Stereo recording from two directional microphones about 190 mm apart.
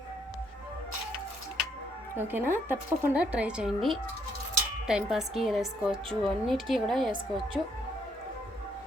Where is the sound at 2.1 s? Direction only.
10° right (ahead or behind).